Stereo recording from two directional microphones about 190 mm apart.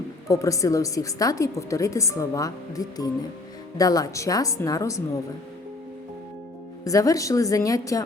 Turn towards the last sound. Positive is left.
turn(degrees=15)  # may be behind; listen again after turning